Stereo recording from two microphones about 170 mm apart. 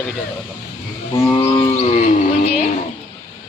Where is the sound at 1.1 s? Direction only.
20° left (ahead or behind).